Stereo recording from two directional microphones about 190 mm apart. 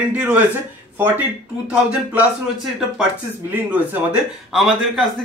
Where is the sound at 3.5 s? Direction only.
10° right (ahead or behind).